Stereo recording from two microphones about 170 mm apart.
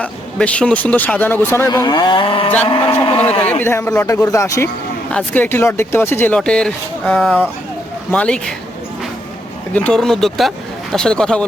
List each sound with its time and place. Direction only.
0.0 s speech: 5° left (ahead or behind); by 3.2 s 35° left (ahead or behind)
3.6 s speech: 15° left (ahead or behind)
9.7 s speech: 5° left (ahead or behind)